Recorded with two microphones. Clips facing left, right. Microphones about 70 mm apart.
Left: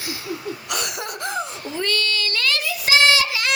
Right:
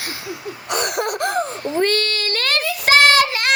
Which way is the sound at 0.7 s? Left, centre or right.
Right.